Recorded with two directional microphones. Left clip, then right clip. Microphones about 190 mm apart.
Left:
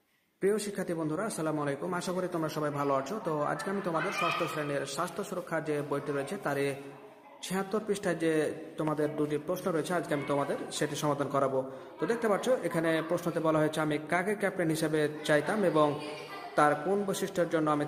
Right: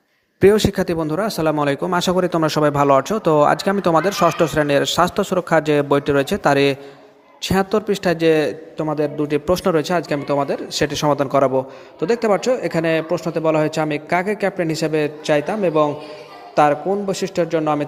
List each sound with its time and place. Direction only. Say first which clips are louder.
0.3 s a man's voice: right 16 dB; 45° right (ahead or behind)
9.3 s a man's voice: right 14 dB; 45° right (ahead or behind); by 17.8 s 30° right (ahead or behind)